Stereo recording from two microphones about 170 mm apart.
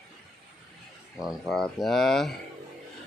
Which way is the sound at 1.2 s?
Centre (ahead or behind).